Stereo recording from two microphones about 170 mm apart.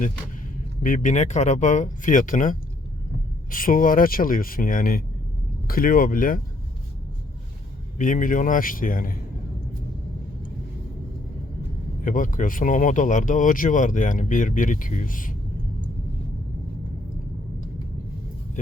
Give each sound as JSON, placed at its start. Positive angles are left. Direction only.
{"t": 0.8, "sound": "speech", "side_deg": 55}
{"t": 7.9, "sound": "speech", "side_deg": 50}
{"t": 12.0, "sound": "speech", "side_deg": 50}